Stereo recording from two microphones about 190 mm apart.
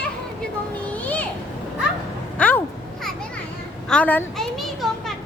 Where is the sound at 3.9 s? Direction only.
10° left (ahead or behind).